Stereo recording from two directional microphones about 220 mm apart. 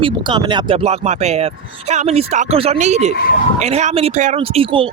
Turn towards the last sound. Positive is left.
turn(degrees=-25)  # may be behind; listen again after turning